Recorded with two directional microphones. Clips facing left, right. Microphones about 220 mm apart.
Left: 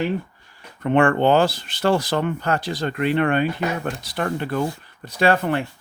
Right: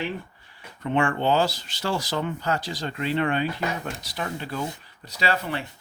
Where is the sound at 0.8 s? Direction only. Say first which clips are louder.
Left 7 dB; 55° left (ahead or behind).